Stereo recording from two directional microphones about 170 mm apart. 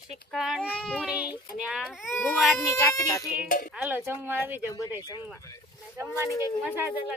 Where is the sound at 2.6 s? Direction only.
15° left (ahead or behind).